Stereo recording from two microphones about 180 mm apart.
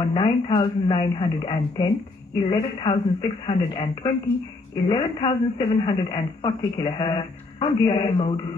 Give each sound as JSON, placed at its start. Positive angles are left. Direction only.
{"t": 0.1, "sound": "speech", "side_deg": 25}